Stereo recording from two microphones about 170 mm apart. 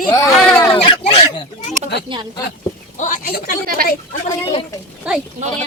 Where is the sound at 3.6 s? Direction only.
60° right (ahead or behind).